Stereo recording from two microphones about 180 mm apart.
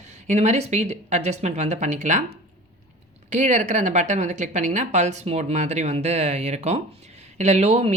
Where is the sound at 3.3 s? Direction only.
40° right (ahead or behind).